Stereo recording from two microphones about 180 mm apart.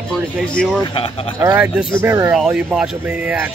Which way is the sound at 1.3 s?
10° right (ahead or behind).